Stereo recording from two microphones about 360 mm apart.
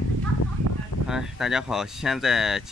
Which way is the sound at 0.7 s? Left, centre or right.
Right.